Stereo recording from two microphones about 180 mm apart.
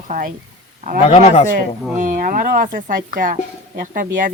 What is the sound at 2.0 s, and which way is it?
Speech, 45° right (ahead or behind).